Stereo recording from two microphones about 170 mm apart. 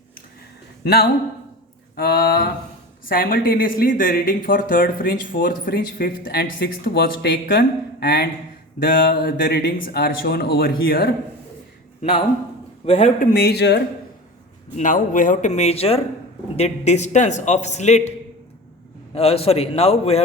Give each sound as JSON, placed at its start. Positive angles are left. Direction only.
{"t": 2.0, "sound": "speech", "side_deg": 65}
{"t": 8.8, "sound": "speech", "side_deg": 55}
{"t": 12.8, "sound": "a man's voice", "side_deg": 40}
{"t": 13.3, "sound": "speech", "side_deg": 70}
{"t": 14.8, "sound": "a man's voice", "side_deg": 50}
{"t": 19.1, "sound": "a man's voice", "side_deg": 35}